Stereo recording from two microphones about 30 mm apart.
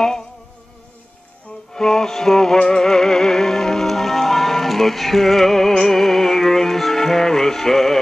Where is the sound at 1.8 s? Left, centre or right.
Centre.